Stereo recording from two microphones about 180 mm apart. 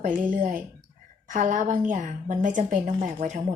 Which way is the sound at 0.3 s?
50° right (ahead or behind).